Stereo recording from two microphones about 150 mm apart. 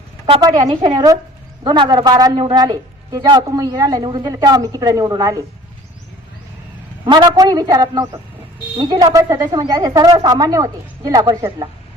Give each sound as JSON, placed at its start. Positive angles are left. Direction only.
{"t": 0.3, "sound": "a woman's voice", "side_deg": -35}
{"t": 7.0, "sound": "a man's voice", "side_deg": -30}